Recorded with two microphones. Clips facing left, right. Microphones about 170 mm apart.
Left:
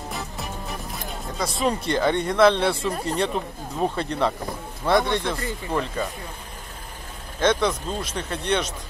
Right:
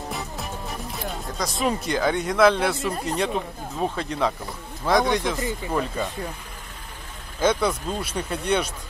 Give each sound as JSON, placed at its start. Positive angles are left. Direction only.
{"t": 1.6, "sound": "speech", "side_deg": -5}
{"t": 7.3, "sound": "speech", "side_deg": -5}